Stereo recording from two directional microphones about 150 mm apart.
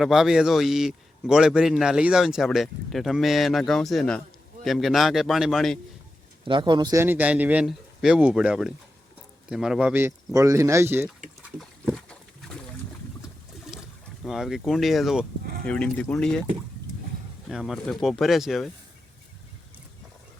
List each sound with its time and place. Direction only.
0.0 s a man's voice: centre (ahead or behind)
6.4 s speech: 30° right (ahead or behind)
7.0 s speech: 10° right (ahead or behind)
14.3 s a man's voice: 5° right (ahead or behind)
17.5 s a man's voice: centre (ahead or behind)